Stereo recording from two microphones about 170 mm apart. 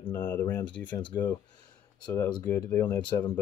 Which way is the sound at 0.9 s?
25° left (ahead or behind).